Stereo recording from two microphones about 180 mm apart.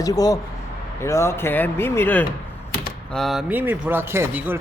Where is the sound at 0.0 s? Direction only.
20° left (ahead or behind).